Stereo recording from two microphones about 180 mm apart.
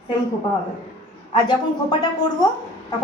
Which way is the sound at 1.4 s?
20° left (ahead or behind).